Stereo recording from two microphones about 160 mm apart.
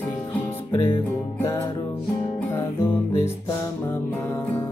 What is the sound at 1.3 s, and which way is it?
Music, 15° left (ahead or behind).